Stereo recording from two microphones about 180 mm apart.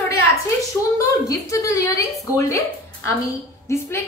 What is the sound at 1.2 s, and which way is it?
A woman's voice, 20° left (ahead or behind).